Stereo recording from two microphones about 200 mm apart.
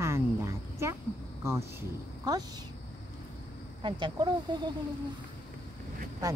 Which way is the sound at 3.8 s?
20° right (ahead or behind).